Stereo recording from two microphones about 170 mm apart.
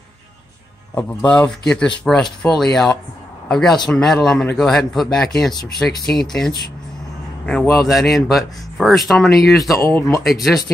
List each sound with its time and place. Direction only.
0.9 s speech: 10° left (ahead or behind)
7.8 s speech: centre (ahead or behind)
9.8 s speech: 15° left (ahead or behind)
10.2 s speech: centre (ahead or behind)